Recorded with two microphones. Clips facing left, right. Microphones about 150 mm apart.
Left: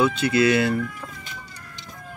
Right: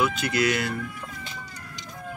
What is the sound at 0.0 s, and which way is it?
Chicken, 30° left (ahead or behind).